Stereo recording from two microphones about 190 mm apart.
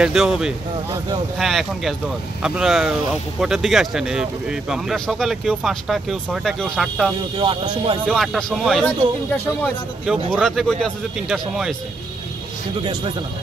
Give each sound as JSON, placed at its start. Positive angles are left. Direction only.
{"t": 0.0, "sound": "speech", "side_deg": 0}
{"t": 7.3, "sound": "speech", "side_deg": -25}
{"t": 8.1, "sound": "speech", "side_deg": 0}
{"t": 10.3, "sound": "speech", "side_deg": 0}